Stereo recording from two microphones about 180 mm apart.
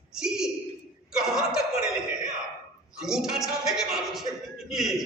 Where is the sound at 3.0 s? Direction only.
5° right (ahead or behind).